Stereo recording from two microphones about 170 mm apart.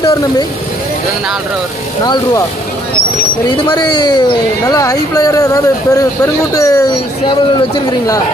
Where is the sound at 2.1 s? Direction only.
25° left (ahead or behind).